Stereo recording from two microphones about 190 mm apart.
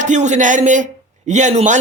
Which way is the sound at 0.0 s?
40° right (ahead or behind).